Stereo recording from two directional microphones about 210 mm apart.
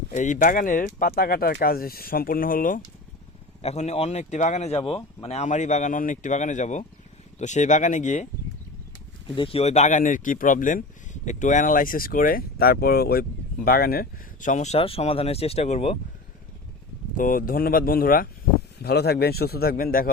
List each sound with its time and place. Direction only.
0.1 s speech: 35° left (ahead or behind)
3.6 s speech: 30° left (ahead or behind)
9.3 s speech: 25° left (ahead or behind)
17.2 s speech: 40° left (ahead or behind)